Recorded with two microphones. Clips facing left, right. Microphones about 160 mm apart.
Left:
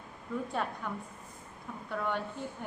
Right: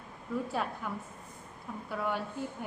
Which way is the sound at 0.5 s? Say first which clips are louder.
Even; 5° right (ahead or behind).